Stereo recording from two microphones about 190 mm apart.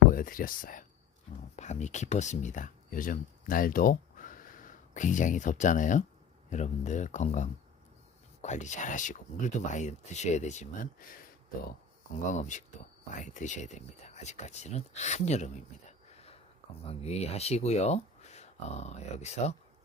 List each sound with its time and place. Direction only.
0.1 s speech: 45° left (ahead or behind)
12.3 s speech: 40° left (ahead or behind)